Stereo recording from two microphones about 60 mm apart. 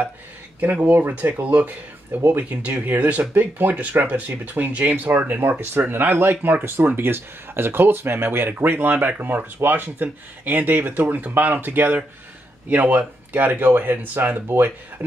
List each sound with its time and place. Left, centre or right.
0.6 s speech: right